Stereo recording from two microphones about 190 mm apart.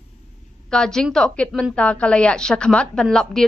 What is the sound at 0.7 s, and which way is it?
A woman's voice, 5° left (ahead or behind).